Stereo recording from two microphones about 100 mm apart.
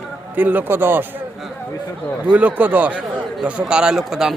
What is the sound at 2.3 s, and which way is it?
Speech, 15° right (ahead or behind).